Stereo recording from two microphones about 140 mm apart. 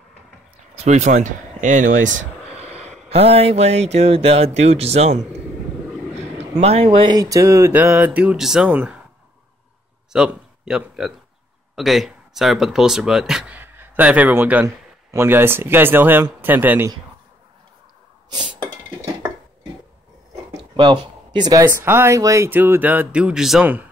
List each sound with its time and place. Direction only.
0.7 s speech: 55° right (ahead or behind)
3.1 s speech: 45° right (ahead or behind)
6.6 s speech: 45° right (ahead or behind); by 9.0 s 10° right (ahead or behind)
10.1 s speech: 5° right (ahead or behind)
18.3 s a sound: 35° right (ahead or behind)
20.7 s speech: 35° right (ahead or behind); by 23.9 s 10° right (ahead or behind)